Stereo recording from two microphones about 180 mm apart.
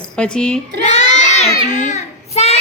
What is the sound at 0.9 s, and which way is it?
Child singing, 40° left (ahead or behind).